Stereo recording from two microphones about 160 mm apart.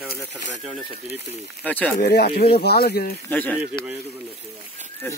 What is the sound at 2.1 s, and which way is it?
Speech, 75° left (ahead or behind).